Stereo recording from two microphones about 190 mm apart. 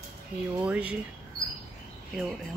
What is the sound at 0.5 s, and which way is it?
Speech, 5° right (ahead or behind).